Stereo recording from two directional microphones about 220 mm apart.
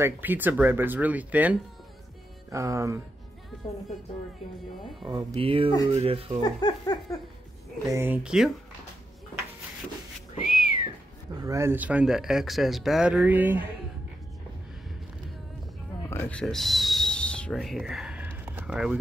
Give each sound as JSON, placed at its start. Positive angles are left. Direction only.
{"t": 0.0, "sound": "speech", "side_deg": -10}
{"t": 5.0, "sound": "speech", "side_deg": -20}
{"t": 6.4, "sound": "speech", "side_deg": 15}
{"t": 7.9, "sound": "speech", "side_deg": -10}
{"t": 10.4, "sound": "whistling", "side_deg": 40}
{"t": 11.3, "sound": "speech", "side_deg": -15}
{"t": 16.1, "sound": "a sound", "side_deg": 10}